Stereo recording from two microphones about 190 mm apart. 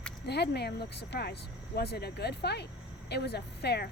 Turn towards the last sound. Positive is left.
turn(degrees=60)  # may be behind; listen again after turning